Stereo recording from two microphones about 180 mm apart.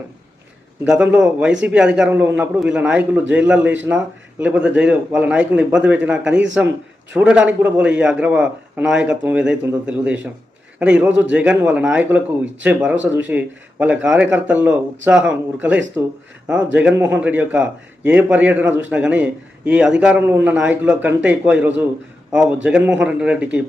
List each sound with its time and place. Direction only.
0.9 s a man's voice: 5° right (ahead or behind)